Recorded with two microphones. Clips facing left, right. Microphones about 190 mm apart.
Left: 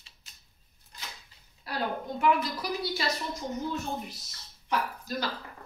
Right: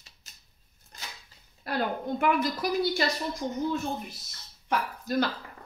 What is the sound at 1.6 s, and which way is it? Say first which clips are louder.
Speech: right 3 dB; 55° right (ahead or behind).